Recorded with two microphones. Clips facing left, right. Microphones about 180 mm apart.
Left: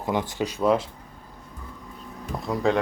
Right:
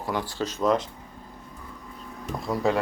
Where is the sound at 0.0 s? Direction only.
20° left (ahead or behind).